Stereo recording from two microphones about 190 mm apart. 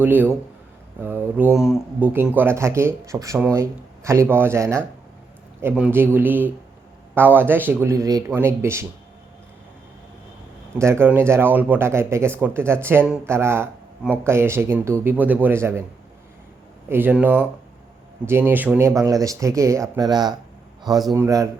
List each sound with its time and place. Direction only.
0.0 s speech: 10° right (ahead or behind)
10.8 s speech: 15° right (ahead or behind)
16.9 s speech: 10° right (ahead or behind)